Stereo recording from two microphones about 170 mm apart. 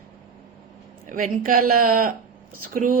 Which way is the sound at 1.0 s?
55° right (ahead or behind).